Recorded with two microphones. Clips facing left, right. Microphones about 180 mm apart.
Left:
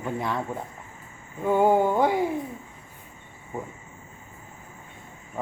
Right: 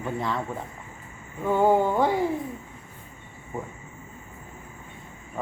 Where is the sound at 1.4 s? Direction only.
15° left (ahead or behind).